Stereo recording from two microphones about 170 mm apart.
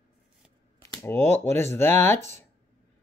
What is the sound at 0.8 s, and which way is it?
Speech, 15° left (ahead or behind).